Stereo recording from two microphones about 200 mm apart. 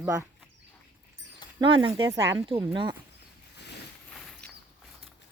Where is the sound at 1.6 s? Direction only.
25° right (ahead or behind).